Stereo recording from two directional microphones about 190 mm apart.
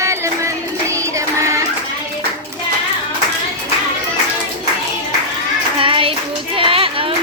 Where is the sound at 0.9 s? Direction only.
15° right (ahead or behind).